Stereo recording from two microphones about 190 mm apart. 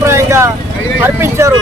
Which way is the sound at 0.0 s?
15° right (ahead or behind).